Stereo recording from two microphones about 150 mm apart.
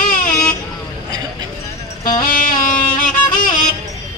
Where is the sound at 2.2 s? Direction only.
70° left (ahead or behind).